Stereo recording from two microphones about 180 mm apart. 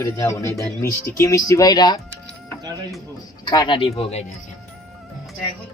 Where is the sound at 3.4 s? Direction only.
25° left (ahead or behind).